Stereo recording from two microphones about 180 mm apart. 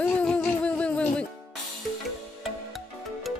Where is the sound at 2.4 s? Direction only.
Centre (ahead or behind).